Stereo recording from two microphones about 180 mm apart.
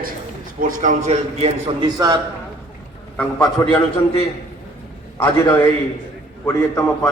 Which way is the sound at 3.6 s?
15° left (ahead or behind).